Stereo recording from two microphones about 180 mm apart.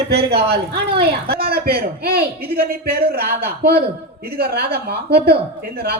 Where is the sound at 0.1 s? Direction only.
65° right (ahead or behind).